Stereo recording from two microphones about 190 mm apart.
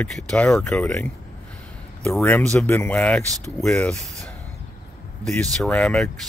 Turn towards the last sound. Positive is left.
turn(degrees=5)  # may be behind; listen again after turning